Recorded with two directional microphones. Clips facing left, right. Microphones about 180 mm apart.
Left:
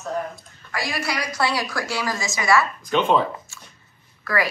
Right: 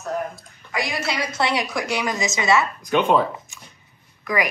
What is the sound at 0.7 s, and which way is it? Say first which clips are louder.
A woman's voice: right 1 dB; 20° right (ahead or behind).